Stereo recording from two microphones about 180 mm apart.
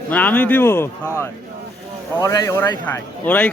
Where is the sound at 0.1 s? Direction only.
10° left (ahead or behind).